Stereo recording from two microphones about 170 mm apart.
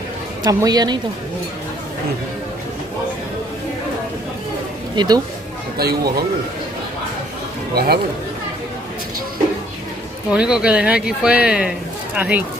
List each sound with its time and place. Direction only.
0.4 s a woman's voice: 20° right (ahead or behind)
4.9 s speech: 25° right (ahead or behind)
5.8 s a man's voice: 65° right (ahead or behind)
7.7 s speech: 70° right (ahead or behind)
10.3 s speech: 5° right (ahead or behind)